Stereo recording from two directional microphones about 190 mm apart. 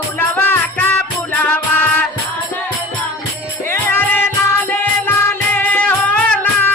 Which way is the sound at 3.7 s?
10° left (ahead or behind).